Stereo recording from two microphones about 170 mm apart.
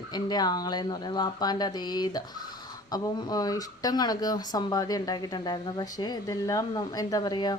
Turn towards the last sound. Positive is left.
turn(degrees=25)  # may be behind; listen again after turning